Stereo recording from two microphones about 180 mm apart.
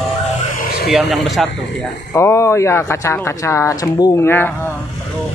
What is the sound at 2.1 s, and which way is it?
Speech, 15° left (ahead or behind).